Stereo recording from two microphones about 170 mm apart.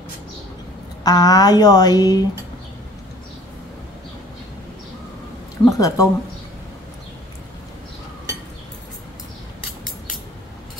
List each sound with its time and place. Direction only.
1.0 s speech: 20° left (ahead or behind)
5.7 s speech: 20° left (ahead or behind)